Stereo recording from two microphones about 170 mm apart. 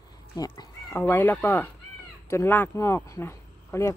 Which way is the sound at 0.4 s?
20° left (ahead or behind).